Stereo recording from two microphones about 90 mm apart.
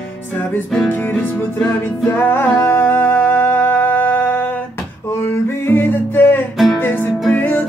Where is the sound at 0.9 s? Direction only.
20° left (ahead or behind).